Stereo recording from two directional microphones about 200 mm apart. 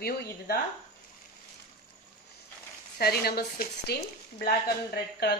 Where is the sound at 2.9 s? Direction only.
50° left (ahead or behind).